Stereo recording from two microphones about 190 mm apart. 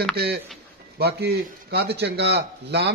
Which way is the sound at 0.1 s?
55° right (ahead or behind).